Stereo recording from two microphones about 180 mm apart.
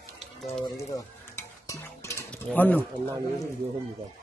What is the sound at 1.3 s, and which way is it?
Stir, 15° left (ahead or behind).